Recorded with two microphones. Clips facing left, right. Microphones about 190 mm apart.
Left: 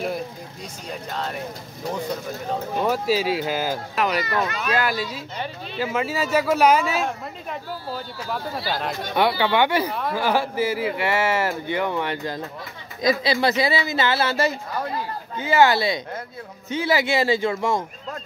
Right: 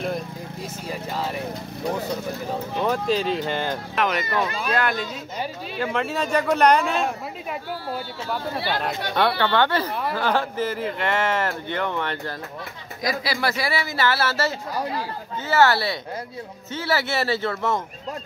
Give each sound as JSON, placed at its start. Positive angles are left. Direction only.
{"t": 0.8, "sound": "speech", "side_deg": -5}
{"t": 2.8, "sound": "speech", "side_deg": 5}
{"t": 8.6, "sound": "speech", "side_deg": 0}
{"t": 9.1, "sound": "speech", "side_deg": 10}